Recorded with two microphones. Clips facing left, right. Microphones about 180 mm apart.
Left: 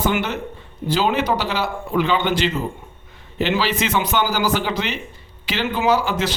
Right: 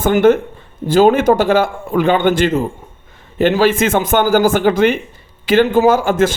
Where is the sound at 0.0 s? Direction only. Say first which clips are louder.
Right 11 dB; 50° right (ahead or behind).